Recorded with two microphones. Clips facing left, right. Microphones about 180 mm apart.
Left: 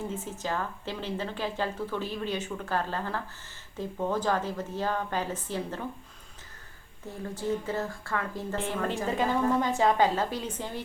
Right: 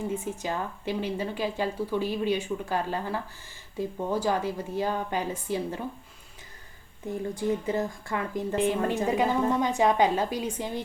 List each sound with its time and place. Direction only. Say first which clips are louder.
0.1 s a woman's voice: right 2 dB; 15° right (ahead or behind)
7.1 s a woman's voice: right 3 dB; 15° right (ahead or behind)